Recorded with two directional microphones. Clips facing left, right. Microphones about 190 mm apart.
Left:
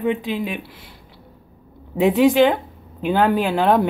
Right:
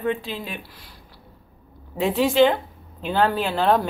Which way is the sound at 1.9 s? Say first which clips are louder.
Left 4 dB; 20° left (ahead or behind).